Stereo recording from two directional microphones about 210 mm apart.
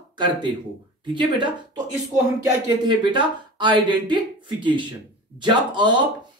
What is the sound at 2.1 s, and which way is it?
Speech, 20° right (ahead or behind).